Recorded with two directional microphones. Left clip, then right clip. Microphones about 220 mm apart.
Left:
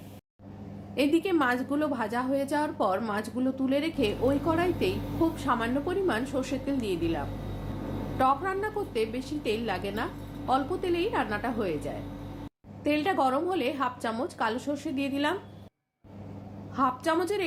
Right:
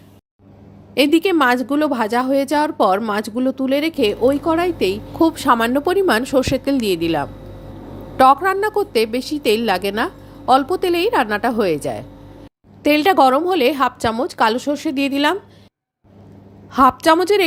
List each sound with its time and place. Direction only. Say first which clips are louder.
0.9 s a woman's voice: right 11 dB; 45° right (ahead or behind)
16.7 s a woman's voice: right 14 dB; 45° right (ahead or behind)